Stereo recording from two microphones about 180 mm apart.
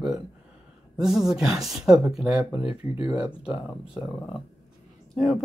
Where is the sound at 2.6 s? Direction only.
30° left (ahead or behind).